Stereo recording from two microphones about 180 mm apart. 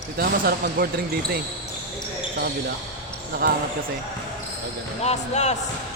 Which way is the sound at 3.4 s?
55° right (ahead or behind).